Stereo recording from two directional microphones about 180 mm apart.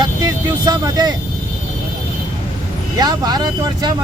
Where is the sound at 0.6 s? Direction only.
25° right (ahead or behind).